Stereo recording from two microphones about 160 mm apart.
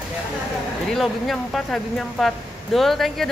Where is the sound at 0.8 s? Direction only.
Centre (ahead or behind).